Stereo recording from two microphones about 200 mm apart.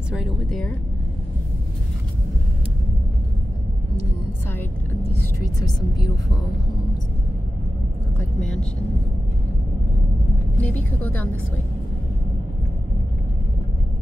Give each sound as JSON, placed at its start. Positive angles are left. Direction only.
{"t": 0.1, "sound": "speech", "side_deg": 0}
{"t": 5.2, "sound": "speech", "side_deg": 20}
{"t": 8.4, "sound": "speech", "side_deg": 5}
{"t": 10.6, "sound": "speech", "side_deg": 10}